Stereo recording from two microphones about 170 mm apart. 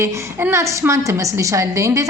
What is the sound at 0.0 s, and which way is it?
A woman's voice, 15° right (ahead or behind).